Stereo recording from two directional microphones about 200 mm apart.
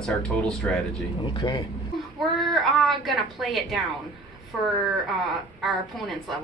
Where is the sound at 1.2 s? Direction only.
20° left (ahead or behind).